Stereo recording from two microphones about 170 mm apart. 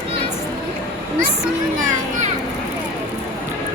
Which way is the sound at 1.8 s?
50° right (ahead or behind).